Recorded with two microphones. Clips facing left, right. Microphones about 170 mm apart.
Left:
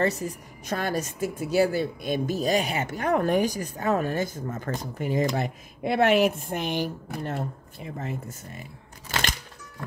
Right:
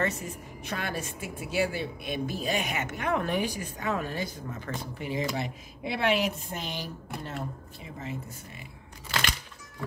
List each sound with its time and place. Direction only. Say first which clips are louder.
0.0 s a woman's voice: left 5 dB; 35° left (ahead or behind); by 8.4 s 50° left (ahead or behind)